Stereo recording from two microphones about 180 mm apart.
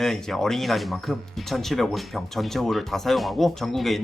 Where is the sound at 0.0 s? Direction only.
Centre (ahead or behind).